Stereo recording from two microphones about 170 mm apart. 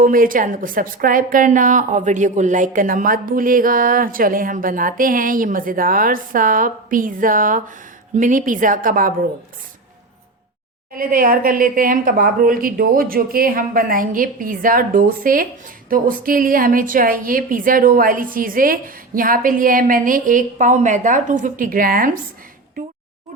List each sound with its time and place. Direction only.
0.0 s a woman's voice: 55° right (ahead or behind)
10.9 s a woman's voice: 55° right (ahead or behind)